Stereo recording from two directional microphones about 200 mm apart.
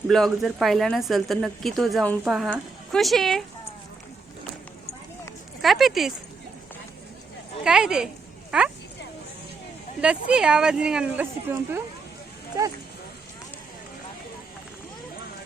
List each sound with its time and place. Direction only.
0.1 s speech: centre (ahead or behind)
5.6 s speech: centre (ahead or behind)
7.6 s speech: 5° right (ahead or behind)
10.0 s speech: 5° right (ahead or behind)